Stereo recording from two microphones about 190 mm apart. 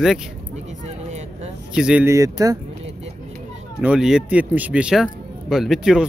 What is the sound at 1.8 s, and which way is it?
Speech, 5° right (ahead or behind).